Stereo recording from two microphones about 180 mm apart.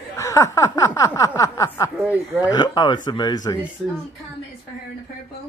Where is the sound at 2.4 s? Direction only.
25° left (ahead or behind).